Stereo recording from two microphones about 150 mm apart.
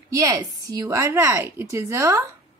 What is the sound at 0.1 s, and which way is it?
A woman's voice, 20° right (ahead or behind).